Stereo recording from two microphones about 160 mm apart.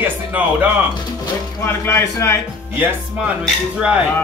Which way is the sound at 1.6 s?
15° left (ahead or behind).